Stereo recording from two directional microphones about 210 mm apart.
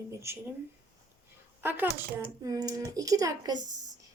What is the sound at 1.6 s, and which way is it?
A woman's voice, 10° right (ahead or behind).